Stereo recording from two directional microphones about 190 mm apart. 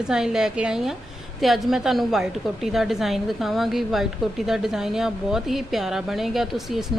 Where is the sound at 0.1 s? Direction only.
5° right (ahead or behind).